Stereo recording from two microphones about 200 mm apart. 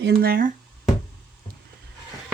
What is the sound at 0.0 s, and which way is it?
Speech, 50° right (ahead or behind).